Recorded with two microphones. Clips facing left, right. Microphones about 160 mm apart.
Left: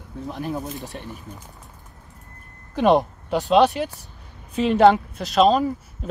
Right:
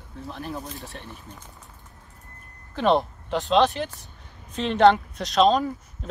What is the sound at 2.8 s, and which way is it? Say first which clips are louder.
Speech: left 4 dB; 10° left (ahead or behind).